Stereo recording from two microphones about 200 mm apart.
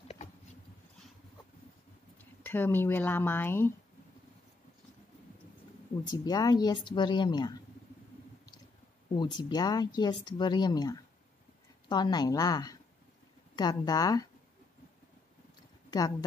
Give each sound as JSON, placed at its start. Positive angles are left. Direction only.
{"t": 2.4, "sound": "speech", "side_deg": 10}
{"t": 6.0, "sound": "speech", "side_deg": 20}
{"t": 9.1, "sound": "speech", "side_deg": 25}
{"t": 15.9, "sound": "speech", "side_deg": 20}